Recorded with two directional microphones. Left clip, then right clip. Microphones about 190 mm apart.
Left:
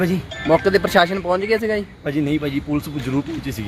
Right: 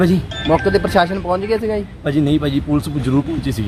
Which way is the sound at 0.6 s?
40° left (ahead or behind).